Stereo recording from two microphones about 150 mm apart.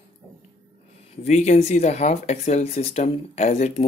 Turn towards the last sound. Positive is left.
turn(degrees=45)  # may be behind; listen again after turning